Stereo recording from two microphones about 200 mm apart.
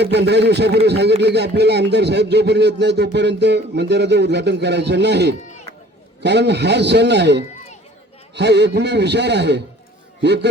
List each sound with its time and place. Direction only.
0.0 s speech: 55° right (ahead or behind)